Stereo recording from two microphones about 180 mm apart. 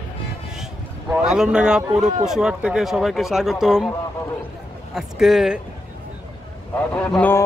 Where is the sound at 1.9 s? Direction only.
40° right (ahead or behind).